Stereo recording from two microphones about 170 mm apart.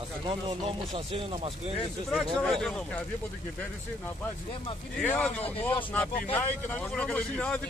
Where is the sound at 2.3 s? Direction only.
Centre (ahead or behind).